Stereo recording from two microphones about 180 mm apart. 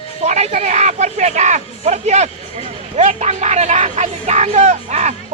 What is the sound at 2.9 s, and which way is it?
Speech, 40° right (ahead or behind).